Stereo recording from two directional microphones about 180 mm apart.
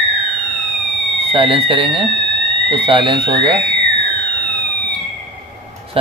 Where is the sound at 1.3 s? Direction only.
30° right (ahead or behind).